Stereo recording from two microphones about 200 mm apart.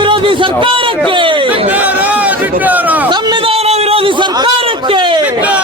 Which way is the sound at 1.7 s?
10° right (ahead or behind).